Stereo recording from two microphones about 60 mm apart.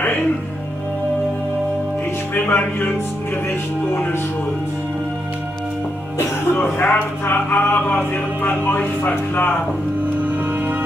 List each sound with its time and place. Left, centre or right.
2.3 s music: left
3.9 s music: left
6.5 s music: left